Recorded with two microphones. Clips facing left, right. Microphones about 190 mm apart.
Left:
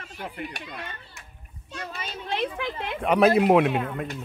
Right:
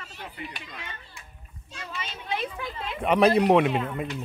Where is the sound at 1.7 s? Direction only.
45° left (ahead or behind).